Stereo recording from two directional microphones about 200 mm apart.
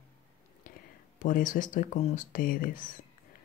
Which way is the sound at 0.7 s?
45° left (ahead or behind).